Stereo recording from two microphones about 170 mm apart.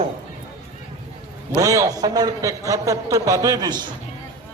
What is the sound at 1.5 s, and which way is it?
A man's voice, 20° right (ahead or behind).